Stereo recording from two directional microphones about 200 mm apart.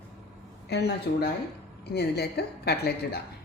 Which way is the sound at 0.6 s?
55° left (ahead or behind).